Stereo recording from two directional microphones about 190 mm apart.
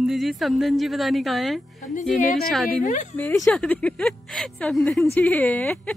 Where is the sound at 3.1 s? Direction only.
10° left (ahead or behind).